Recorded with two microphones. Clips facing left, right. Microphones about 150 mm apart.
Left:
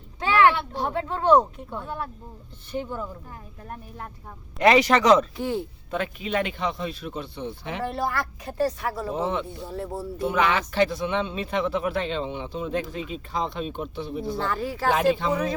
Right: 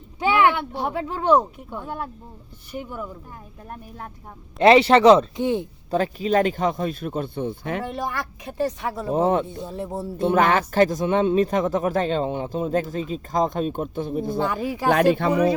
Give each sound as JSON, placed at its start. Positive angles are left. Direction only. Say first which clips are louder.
{"t": 0.2, "sound": "speech", "louder": "right 1 dB", "side_deg": -15}
{"t": 4.6, "sound": "speech", "louder": "right 5 dB", "side_deg": -30}
{"t": 7.9, "sound": "speech", "louder": "left 1 dB", "side_deg": -15}
{"t": 9.1, "sound": "speech", "louder": "right 11 dB", "side_deg": -45}
{"t": 9.7, "sound": "speech", "louder": "right 1 dB", "side_deg": -20}
{"t": 10.2, "sound": "speech", "louder": "right 5 dB", "side_deg": -50}
{"t": 14.3, "sound": "speech", "louder": "right 3 dB", "side_deg": -15}
{"t": 14.9, "sound": "speech", "louder": "right 4 dB", "side_deg": -55}